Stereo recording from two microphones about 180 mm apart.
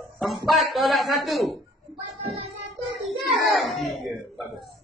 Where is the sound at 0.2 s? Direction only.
Centre (ahead or behind).